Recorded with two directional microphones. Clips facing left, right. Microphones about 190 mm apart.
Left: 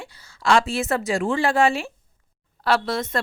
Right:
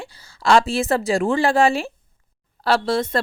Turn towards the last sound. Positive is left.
turn(degrees=-35)  # may be behind; listen again after turning